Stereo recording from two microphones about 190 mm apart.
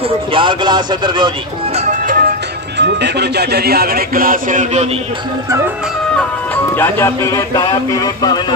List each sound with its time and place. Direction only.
0.3 s speech: 25° right (ahead or behind)
1.9 s music: 45° right (ahead or behind)
2.8 s speech: 60° right (ahead or behind); by 4.8 s 40° right (ahead or behind)
6.1 s speech: 10° left (ahead or behind)